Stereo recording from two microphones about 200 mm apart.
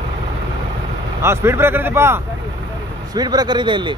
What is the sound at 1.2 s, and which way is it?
Speech, 15° right (ahead or behind).